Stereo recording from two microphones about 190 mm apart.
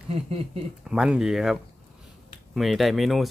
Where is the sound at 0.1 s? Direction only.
30° right (ahead or behind).